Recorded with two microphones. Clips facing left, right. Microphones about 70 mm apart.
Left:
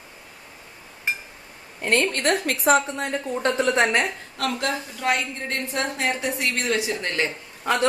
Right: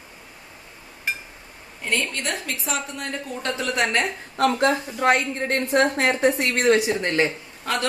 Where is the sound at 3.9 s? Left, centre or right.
Centre.